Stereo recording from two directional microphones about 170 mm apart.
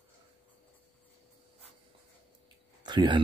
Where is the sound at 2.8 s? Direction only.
25° right (ahead or behind).